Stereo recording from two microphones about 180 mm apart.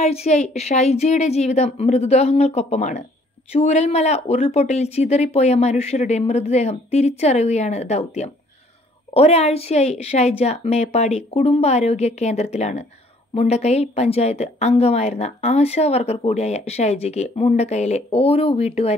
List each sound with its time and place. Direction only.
0.0 s a woman's voice: 35° left (ahead or behind)